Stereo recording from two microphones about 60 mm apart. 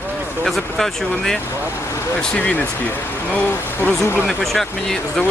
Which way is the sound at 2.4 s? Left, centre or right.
Left.